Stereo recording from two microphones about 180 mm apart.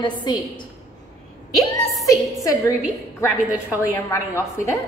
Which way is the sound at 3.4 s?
10° right (ahead or behind).